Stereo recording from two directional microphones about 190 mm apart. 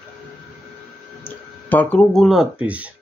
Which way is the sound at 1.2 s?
10° left (ahead or behind).